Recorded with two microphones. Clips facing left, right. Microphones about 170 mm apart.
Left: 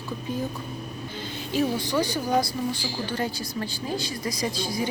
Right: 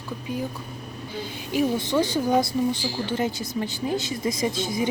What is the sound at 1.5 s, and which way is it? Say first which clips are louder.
A woman's voice: right 2 dB; 20° right (ahead or behind).